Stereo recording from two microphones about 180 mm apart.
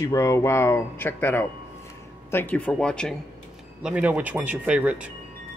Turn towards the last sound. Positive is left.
turn(degrees=-5)  # may be behind; listen again after turning